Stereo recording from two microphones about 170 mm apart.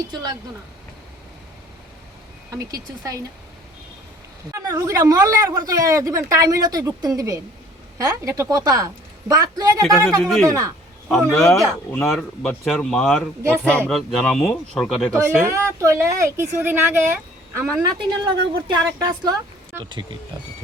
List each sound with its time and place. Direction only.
0.1 s speech: 25° right (ahead or behind)
2.5 s speech: 20° right (ahead or behind)
4.5 s speech: 20° right (ahead or behind)
9.8 s speech: 5° left (ahead or behind)
10.4 s speech: 20° right (ahead or behind)
11.1 s speech: 5° left (ahead or behind)
15.5 s speech: 15° right (ahead or behind)
18.3 s speech: 25° right (ahead or behind)